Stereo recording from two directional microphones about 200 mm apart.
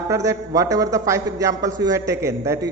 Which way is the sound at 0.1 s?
15° right (ahead or behind).